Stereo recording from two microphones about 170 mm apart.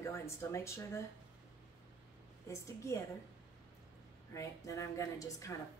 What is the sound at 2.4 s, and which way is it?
Speech, 15° left (ahead or behind).